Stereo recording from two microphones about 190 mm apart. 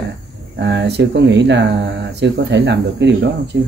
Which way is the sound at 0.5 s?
65° right (ahead or behind).